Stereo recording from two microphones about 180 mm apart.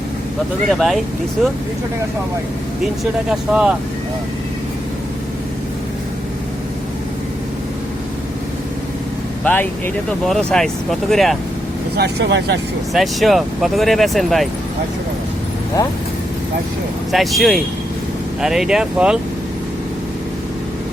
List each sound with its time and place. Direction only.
0.7 s speech: centre (ahead or behind)
3.0 s speech: 5° right (ahead or behind)
9.4 s speech: 10° left (ahead or behind)
11.9 s speech: 70° right (ahead or behind)
12.9 s speech: centre (ahead or behind)
17.1 s speech: centre (ahead or behind)